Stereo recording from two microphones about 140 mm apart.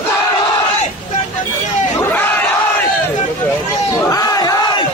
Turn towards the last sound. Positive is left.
turn(degrees=25)  # may be behind; listen again after turning